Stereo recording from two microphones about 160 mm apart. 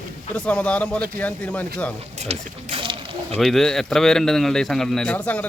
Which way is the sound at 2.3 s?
35° right (ahead or behind).